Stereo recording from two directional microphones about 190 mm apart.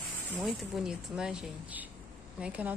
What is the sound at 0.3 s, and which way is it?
Speech, centre (ahead or behind).